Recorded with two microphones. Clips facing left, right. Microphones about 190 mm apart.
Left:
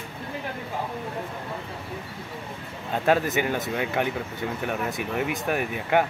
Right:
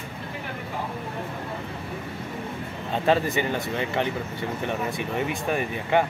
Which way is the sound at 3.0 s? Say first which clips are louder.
Even; centre (ahead or behind).